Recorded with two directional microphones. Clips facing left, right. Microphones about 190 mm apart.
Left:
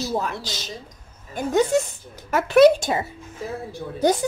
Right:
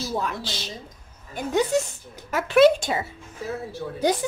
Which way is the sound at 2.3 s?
45° left (ahead or behind).